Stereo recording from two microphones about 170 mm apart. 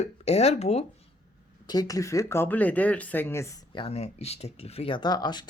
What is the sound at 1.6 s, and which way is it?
Speech, 25° left (ahead or behind).